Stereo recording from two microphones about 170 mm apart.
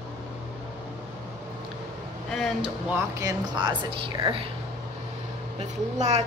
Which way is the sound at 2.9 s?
25° right (ahead or behind).